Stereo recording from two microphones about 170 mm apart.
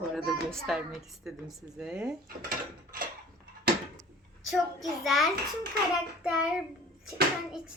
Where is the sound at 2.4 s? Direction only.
60° right (ahead or behind).